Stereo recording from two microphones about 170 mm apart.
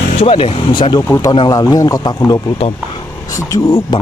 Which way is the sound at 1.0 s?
20° left (ahead or behind).